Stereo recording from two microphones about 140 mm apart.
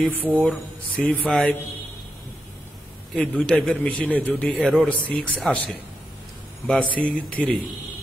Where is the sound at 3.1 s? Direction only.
5° left (ahead or behind).